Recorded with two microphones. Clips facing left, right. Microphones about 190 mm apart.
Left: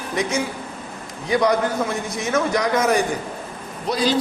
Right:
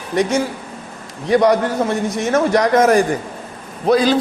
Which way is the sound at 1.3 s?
40° right (ahead or behind).